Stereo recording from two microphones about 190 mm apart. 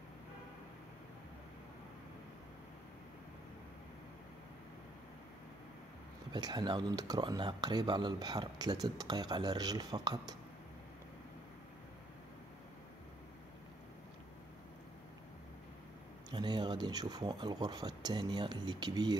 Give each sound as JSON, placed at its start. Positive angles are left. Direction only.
{"t": 6.3, "sound": "speech", "side_deg": -20}
{"t": 16.3, "sound": "speech", "side_deg": -25}